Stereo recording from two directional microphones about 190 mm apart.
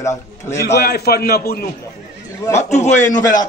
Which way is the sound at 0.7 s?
60° left (ahead or behind).